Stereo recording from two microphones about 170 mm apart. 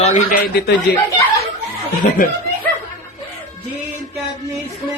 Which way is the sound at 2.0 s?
55° left (ahead or behind).